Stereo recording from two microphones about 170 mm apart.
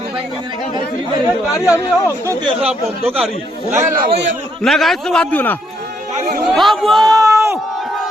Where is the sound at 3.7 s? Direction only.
15° right (ahead or behind).